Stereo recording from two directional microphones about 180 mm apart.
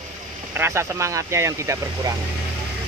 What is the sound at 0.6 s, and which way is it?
Speech, 15° right (ahead or behind).